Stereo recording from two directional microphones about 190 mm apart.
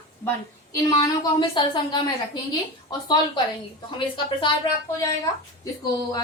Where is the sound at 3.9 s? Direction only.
25° left (ahead or behind).